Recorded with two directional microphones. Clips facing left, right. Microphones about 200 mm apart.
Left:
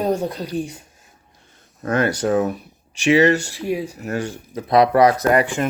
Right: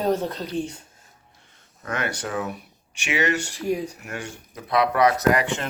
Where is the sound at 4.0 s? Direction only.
35° left (ahead or behind).